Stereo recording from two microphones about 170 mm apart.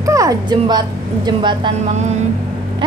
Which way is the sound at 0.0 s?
20° right (ahead or behind).